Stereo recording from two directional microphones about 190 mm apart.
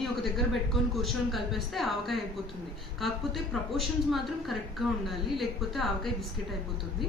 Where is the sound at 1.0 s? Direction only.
Centre (ahead or behind).